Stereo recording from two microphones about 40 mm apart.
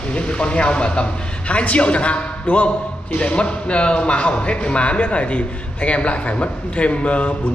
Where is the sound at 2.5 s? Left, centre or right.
Left.